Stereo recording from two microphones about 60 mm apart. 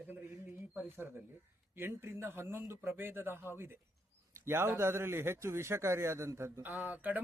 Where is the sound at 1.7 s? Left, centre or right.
Right.